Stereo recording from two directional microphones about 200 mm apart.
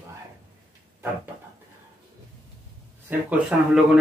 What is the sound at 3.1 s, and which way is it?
Speech, 5° right (ahead or behind).